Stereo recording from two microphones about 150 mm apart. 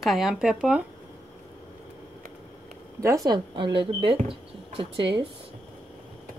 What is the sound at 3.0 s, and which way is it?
Speech, 20° right (ahead or behind).